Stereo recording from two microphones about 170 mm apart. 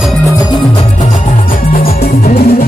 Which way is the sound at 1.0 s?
55° left (ahead or behind).